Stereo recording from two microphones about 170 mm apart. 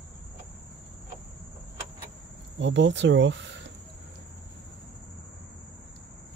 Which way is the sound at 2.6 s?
90° right.